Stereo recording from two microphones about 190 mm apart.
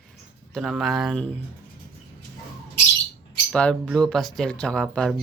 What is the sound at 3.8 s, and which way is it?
Speech, centre (ahead or behind).